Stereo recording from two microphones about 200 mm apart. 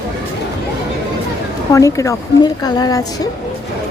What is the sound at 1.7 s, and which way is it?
Speech, 15° left (ahead or behind).